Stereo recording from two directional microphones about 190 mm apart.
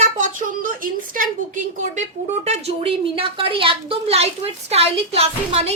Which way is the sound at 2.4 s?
35° right (ahead or behind).